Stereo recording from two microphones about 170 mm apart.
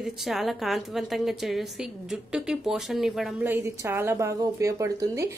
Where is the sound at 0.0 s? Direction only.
Centre (ahead or behind).